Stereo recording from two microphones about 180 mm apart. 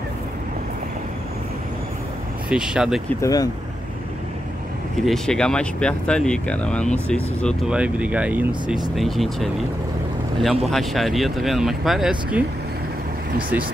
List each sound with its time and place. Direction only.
2.5 s speech: 5° right (ahead or behind)
3.2 s speech: 20° left (ahead or behind)
5.0 s speech: 5° left (ahead or behind)
7.6 s speech: 5° right (ahead or behind)
10.7 s speech: centre (ahead or behind)